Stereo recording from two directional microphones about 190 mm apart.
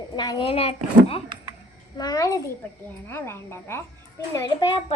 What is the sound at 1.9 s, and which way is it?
A woman's voice, 20° left (ahead or behind).